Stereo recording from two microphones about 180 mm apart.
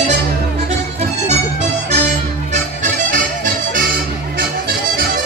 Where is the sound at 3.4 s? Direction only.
50° right (ahead or behind).